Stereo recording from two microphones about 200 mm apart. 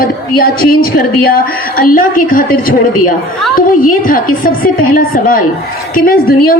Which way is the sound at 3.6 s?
45° left (ahead or behind).